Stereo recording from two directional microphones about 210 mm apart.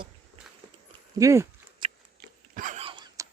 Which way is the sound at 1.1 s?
15° right (ahead or behind).